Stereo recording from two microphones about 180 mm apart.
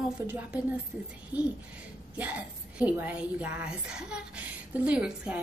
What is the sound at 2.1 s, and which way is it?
A woman's voice, 10° right (ahead or behind).